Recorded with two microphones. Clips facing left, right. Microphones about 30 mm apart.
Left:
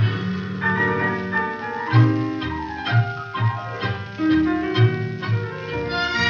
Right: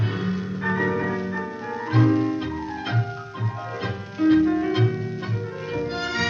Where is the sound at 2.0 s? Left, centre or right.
Centre.